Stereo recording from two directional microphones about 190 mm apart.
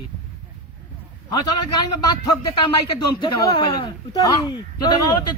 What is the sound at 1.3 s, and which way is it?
Speech, 20° left (ahead or behind).